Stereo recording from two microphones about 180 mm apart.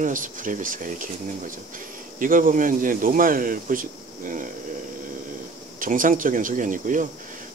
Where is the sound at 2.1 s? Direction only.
50° right (ahead or behind).